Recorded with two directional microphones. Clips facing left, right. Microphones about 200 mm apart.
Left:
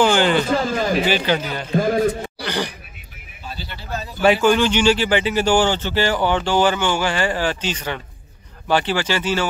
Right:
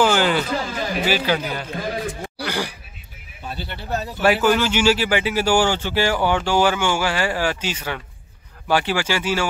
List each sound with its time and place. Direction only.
0.0 s a sound: 5° right (ahead or behind)
1.0 s speech: 5° right (ahead or behind)
1.8 s a sound: 50° left (ahead or behind)
2.4 s a man's voice: 10° right (ahead or behind)
3.4 s speech: 60° right (ahead or behind)
4.2 s speech: 5° right (ahead or behind)